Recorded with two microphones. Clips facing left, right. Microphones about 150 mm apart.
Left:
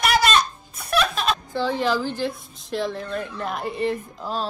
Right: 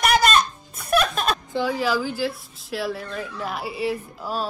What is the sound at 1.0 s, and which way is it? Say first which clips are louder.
Chuckle: left 3 dB; 45° right (ahead or behind).